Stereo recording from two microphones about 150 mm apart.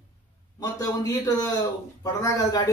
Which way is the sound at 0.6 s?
25° left (ahead or behind).